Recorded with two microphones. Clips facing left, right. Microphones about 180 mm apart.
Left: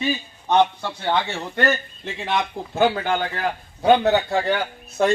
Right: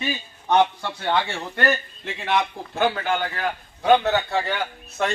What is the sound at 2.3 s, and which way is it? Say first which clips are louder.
Speech: right 1 dB; 10° left (ahead or behind).